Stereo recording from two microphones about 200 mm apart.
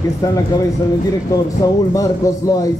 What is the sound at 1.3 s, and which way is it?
Speech, 15° left (ahead or behind).